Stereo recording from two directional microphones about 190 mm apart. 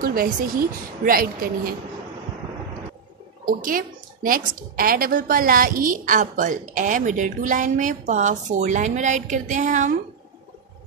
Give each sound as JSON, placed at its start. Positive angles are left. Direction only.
{"t": 0.0, "sound": "a woman's voice", "side_deg": -50}
{"t": 3.4, "sound": "speech", "side_deg": -50}